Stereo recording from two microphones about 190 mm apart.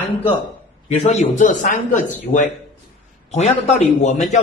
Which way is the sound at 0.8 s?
35° left (ahead or behind).